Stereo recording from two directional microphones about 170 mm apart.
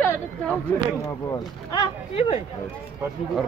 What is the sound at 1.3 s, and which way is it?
Speech, 30° left (ahead or behind).